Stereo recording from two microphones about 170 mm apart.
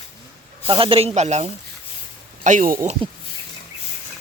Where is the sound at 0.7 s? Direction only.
30° right (ahead or behind); by 2.7 s 45° right (ahead or behind).